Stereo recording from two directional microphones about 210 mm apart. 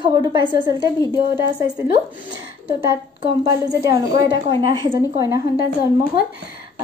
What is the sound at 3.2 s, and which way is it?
A woman's voice, 20° right (ahead or behind).